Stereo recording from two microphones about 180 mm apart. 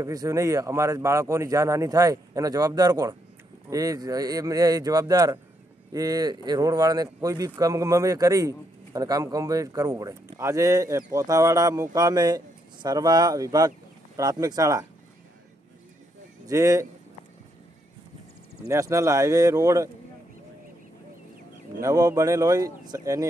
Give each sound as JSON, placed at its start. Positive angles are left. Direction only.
{"t": 0.0, "sound": "speech", "side_deg": -20}
{"t": 16.4, "sound": "speech", "side_deg": -20}
{"t": 18.7, "sound": "speech", "side_deg": -15}
{"t": 21.8, "sound": "speech", "side_deg": -20}